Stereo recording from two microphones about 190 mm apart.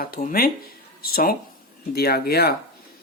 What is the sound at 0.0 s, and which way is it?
Speech, 50° left (ahead or behind).